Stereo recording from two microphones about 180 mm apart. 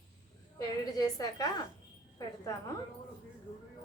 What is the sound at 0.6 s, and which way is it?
Speech, 20° left (ahead or behind).